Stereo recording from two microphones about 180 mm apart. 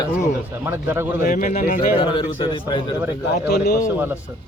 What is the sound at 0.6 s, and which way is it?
Speech, 15° right (ahead or behind).